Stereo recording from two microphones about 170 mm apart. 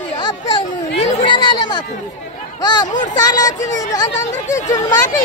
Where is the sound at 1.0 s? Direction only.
25° left (ahead or behind).